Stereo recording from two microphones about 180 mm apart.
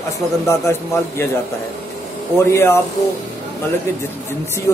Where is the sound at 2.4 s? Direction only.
15° left (ahead or behind).